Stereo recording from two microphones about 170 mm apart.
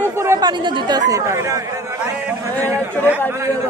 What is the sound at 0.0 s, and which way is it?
Speech, 15° right (ahead or behind).